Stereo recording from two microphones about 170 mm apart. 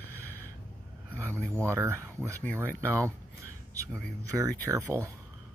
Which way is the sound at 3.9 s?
5° left (ahead or behind).